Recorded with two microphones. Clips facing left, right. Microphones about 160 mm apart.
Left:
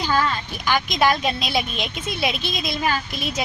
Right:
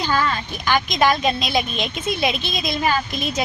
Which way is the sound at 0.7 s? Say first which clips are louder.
Right 1 dB; 10° left (ahead or behind).